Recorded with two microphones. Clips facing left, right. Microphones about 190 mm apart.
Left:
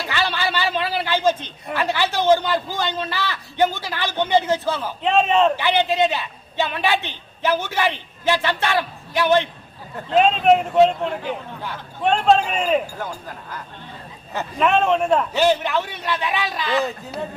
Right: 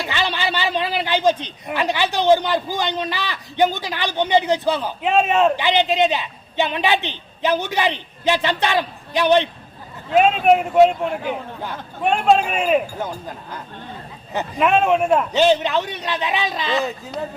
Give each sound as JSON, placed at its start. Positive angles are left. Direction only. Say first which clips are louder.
{"t": 0.0, "sound": "a man's voice", "louder": "right 1 dB", "side_deg": -20}
{"t": 12.0, "sound": "a man's voice", "louder": "even", "side_deg": -10}
{"t": 13.0, "sound": "a man's voice", "louder": "right 3 dB", "side_deg": -20}
{"t": 14.3, "sound": "a man's voice", "louder": "right 1 dB", "side_deg": -10}
{"t": 15.3, "sound": "a man's voice", "louder": "right 2 dB", "side_deg": -20}